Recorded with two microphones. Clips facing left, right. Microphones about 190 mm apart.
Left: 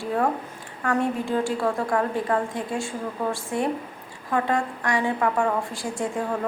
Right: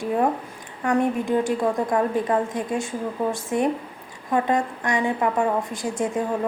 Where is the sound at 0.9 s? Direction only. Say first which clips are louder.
Right 3 dB; 15° right (ahead or behind).